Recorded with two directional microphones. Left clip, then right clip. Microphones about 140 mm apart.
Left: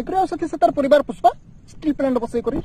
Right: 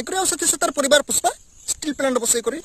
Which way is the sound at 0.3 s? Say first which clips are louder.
Left 4 dB; 60° right (ahead or behind).